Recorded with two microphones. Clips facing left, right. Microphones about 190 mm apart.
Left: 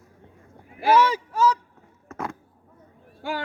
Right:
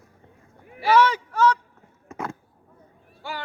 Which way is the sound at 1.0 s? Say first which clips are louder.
Right 1 dB; 10° left (ahead or behind).